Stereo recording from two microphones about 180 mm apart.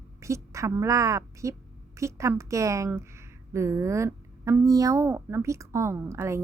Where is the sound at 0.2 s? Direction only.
15° right (ahead or behind).